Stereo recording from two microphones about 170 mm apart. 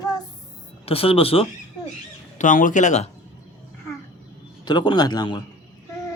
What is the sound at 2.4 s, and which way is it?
Speech, 50° left (ahead or behind).